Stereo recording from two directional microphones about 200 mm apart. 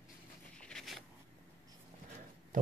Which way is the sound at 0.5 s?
5° left (ahead or behind).